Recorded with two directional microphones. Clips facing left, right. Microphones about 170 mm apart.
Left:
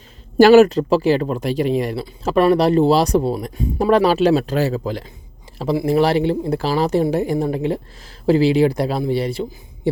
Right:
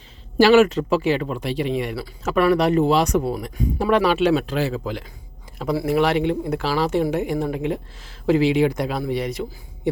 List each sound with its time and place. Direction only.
0.3 s speech: 45° left (ahead or behind)
5.5 s a sound: 25° left (ahead or behind)
5.8 s speech: 35° left (ahead or behind)